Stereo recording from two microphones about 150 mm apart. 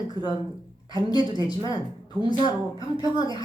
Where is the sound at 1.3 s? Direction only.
25° left (ahead or behind).